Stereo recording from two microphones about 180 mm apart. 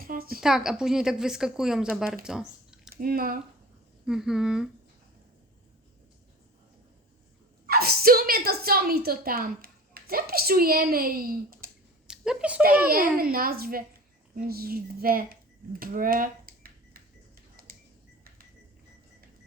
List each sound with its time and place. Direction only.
0.0 s a sound: 55° right (ahead or behind)
0.4 s a woman's voice: 5° right (ahead or behind)
2.2 s a sound: 5° right (ahead or behind)
2.9 s speech: 55° right (ahead or behind)
4.0 s a woman's voice: 5° right (ahead or behind)
7.7 s a woman's voice: 55° right (ahead or behind)
12.0 s speech: 5° right (ahead or behind)
13.3 s a woman's voice: 55° right (ahead or behind)